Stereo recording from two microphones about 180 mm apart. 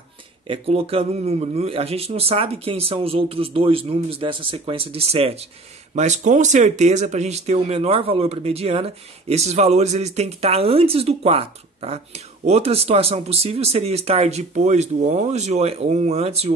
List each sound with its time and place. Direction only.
0.5 s speech: 30° right (ahead or behind)